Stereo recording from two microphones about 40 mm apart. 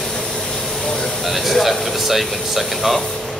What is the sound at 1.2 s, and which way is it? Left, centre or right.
Air conditioning, centre.